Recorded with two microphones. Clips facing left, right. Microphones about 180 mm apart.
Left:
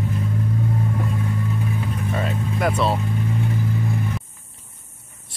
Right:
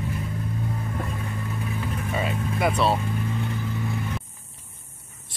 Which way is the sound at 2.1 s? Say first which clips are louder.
Left 1 dB; 5° right (ahead or behind).